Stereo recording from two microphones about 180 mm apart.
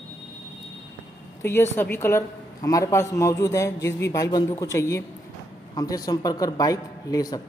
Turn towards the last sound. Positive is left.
turn(degrees=20)  # may be behind; listen again after turning